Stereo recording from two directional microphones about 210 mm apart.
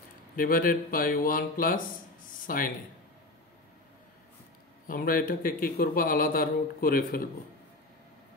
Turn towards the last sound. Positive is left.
turn(degrees=45)  # may be behind; listen again after turning